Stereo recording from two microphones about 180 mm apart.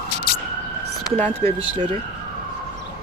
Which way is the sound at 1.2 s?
10° left (ahead or behind).